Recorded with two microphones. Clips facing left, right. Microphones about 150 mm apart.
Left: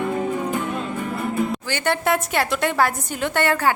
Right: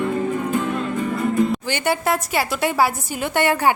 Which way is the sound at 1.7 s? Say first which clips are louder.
Even; 10° right (ahead or behind).